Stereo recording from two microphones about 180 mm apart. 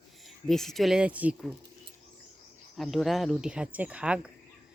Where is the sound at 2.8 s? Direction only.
Centre (ahead or behind).